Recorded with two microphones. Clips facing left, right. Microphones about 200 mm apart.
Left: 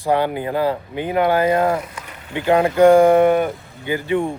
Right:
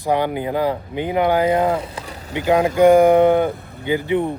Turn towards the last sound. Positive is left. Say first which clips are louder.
# right 1 dB
turn(degrees=-20)  # may be behind; listen again after turning